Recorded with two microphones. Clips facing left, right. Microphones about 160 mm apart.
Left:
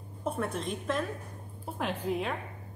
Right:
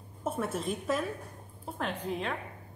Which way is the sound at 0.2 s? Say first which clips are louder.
Even; 5° right (ahead or behind).